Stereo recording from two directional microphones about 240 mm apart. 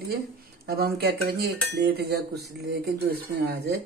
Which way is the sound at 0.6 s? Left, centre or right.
Right.